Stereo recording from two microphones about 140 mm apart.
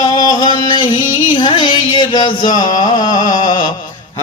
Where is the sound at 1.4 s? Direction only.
35° left (ahead or behind).